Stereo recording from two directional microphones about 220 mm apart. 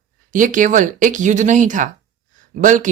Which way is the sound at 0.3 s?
35° right (ahead or behind).